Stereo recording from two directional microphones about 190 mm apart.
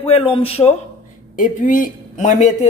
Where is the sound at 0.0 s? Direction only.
30° left (ahead or behind).